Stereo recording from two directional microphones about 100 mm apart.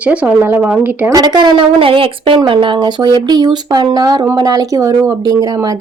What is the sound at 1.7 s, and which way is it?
Speech, 65° right (ahead or behind).